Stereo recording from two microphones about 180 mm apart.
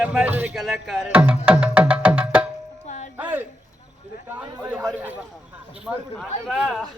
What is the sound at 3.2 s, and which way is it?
Speech, 10° right (ahead or behind).